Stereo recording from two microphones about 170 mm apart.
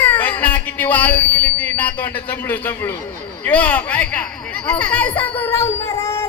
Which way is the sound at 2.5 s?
10° left (ahead or behind).